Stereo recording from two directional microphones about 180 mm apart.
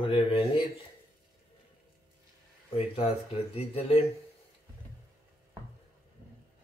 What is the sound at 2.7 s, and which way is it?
Speech, 35° left (ahead or behind).